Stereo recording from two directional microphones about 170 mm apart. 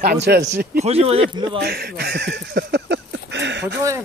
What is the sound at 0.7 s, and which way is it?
Speech, 35° right (ahead or behind).